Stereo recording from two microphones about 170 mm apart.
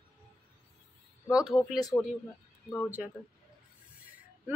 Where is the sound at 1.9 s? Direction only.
10° left (ahead or behind).